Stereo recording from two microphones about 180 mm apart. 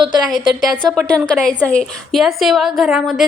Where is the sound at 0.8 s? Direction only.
Centre (ahead or behind).